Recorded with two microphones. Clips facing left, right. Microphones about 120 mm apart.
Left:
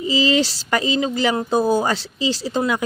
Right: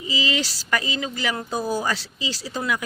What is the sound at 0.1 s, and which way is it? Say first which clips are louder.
Speech: left 8 dB; 30° left (ahead or behind).